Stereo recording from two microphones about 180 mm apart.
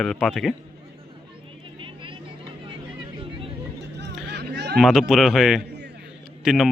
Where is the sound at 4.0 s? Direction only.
70° right (ahead or behind).